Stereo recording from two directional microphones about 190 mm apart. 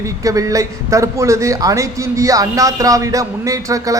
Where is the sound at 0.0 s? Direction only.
15° right (ahead or behind).